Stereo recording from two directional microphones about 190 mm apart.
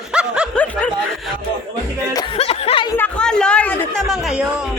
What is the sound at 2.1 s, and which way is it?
Music, 30° left (ahead or behind).